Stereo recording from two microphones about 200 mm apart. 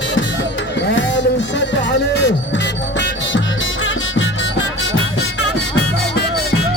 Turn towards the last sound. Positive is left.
turn(degrees=70)  # may be behind; listen again after turning